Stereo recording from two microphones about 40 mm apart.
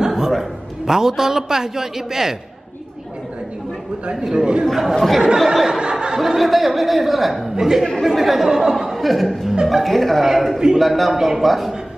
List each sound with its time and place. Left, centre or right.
0.0 s a sound: centre
0.3 s a man's voice: centre
4.0 s speech: centre
4.6 s speech: centre
5.7 s chuckle: centre
6.1 s speech: centre
7.5 s a man's voice: centre
7.8 s a man's voice: centre